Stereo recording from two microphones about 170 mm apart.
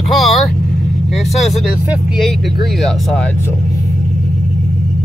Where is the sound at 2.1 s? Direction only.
Centre (ahead or behind).